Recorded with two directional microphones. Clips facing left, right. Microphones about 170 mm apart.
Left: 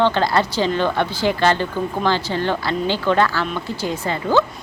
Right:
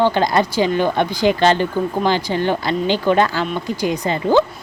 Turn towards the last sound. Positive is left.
turn(degrees=-15)  # may be behind; listen again after turning